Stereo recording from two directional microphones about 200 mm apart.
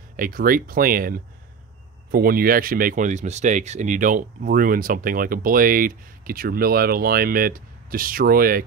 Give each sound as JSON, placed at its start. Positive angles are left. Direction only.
{"t": 0.1, "sound": "speech", "side_deg": -45}